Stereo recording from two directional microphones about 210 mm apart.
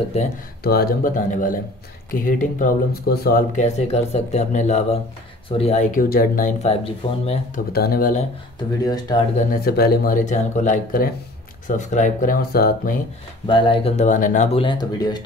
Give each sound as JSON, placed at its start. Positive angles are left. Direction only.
{"t": 0.2, "sound": "speech", "side_deg": 30}
{"t": 0.7, "sound": "speech", "side_deg": 45}
{"t": 7.7, "sound": "speech", "side_deg": 45}
{"t": 8.8, "sound": "speech", "side_deg": 20}
{"t": 9.4, "sound": "speech", "side_deg": 45}
{"t": 13.5, "sound": "speech", "side_deg": 25}